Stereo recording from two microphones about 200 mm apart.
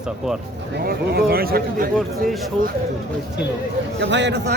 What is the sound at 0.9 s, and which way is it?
Speech, 50° right (ahead or behind).